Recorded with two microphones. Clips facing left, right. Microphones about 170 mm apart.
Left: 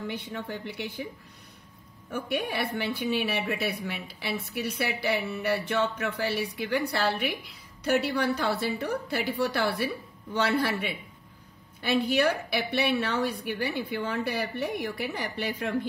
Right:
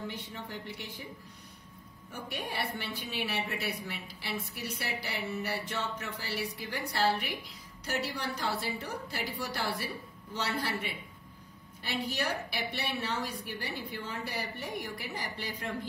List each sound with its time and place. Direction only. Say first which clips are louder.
0.3 s a woman's voice: left 6 dB; 60° left (ahead or behind)
2.0 s a woman's voice: left 9 dB; 55° left (ahead or behind)